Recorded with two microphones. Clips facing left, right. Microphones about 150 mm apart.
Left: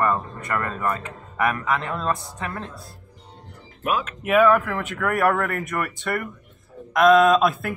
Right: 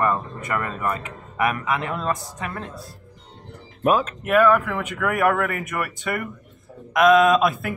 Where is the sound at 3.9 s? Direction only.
35° right (ahead or behind).